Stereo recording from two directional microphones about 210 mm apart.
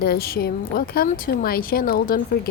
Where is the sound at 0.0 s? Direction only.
50° left (ahead or behind).